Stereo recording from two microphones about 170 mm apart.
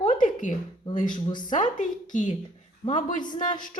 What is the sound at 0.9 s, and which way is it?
Speech, 25° left (ahead or behind).